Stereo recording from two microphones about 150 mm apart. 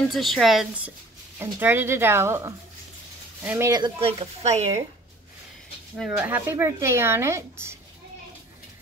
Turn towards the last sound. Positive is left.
turn(degrees=-15)  # may be behind; listen again after turning